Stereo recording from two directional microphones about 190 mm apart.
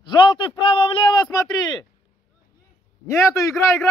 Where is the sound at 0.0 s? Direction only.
25° left (ahead or behind).